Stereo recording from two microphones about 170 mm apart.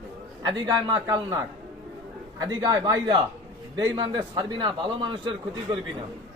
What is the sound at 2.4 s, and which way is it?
A man's voice, 25° right (ahead or behind).